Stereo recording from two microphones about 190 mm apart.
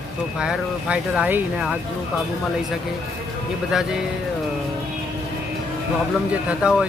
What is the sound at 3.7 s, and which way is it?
Speech, centre (ahead or behind).